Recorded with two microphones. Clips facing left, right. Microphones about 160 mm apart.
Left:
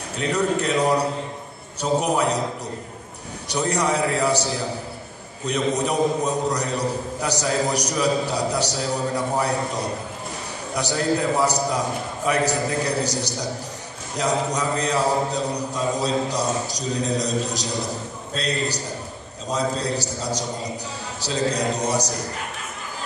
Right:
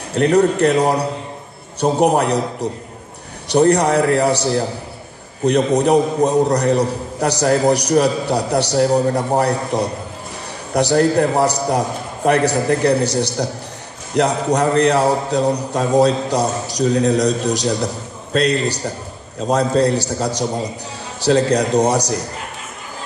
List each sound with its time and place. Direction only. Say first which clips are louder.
0.1 s a man's voice: right 9 dB; 60° right (ahead or behind)
1.8 s a man's voice: right 6 dB; 60° right (ahead or behind)
3.4 s a man's voice: right 9 dB; 60° right (ahead or behind)